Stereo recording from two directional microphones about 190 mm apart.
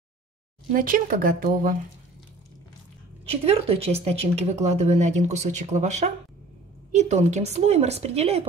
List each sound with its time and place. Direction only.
0.7 s speech: 45° right (ahead or behind)
3.4 s speech: 30° right (ahead or behind)